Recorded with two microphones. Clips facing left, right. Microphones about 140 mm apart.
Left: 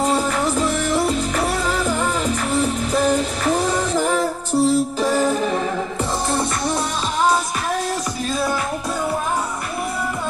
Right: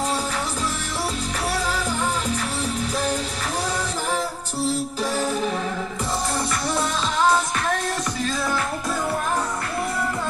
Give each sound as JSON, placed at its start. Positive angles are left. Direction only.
{"t": 0.0, "sound": "music", "side_deg": 55}
{"t": 2.5, "sound": "music", "side_deg": 50}